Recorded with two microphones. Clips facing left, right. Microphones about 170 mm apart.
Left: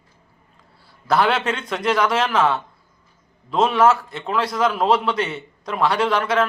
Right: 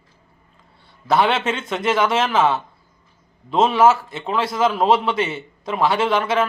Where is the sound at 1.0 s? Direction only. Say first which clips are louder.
Right 1 dB; centre (ahead or behind).